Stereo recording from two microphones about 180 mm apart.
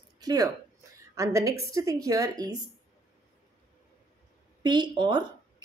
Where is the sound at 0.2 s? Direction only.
20° right (ahead or behind).